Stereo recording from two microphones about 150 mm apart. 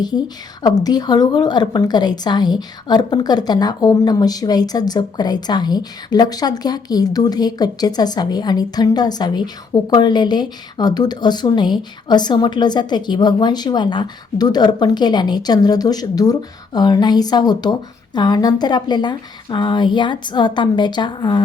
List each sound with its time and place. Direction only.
0.0 s a woman's voice: 25° left (ahead or behind)